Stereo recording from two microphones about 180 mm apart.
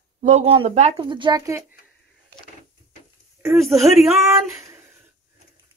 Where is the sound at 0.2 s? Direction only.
40° right (ahead or behind).